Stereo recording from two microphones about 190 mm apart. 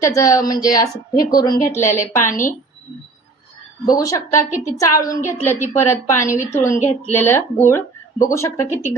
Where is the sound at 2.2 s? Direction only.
45° left (ahead or behind).